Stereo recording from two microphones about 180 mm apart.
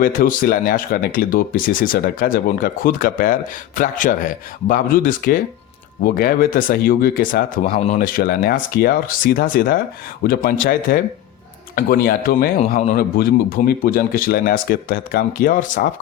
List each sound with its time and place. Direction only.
0.0 s speech: 50° left (ahead or behind)